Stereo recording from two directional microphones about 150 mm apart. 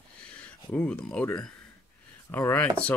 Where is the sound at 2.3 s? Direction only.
10° left (ahead or behind).